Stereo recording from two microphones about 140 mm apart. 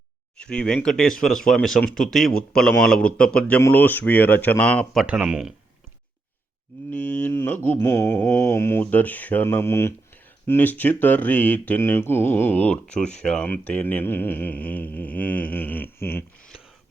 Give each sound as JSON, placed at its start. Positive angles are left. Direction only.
{"t": 0.3, "sound": "speech", "side_deg": 5}
{"t": 5.0, "sound": "speech", "side_deg": -5}
{"t": 6.9, "sound": "speech", "side_deg": 10}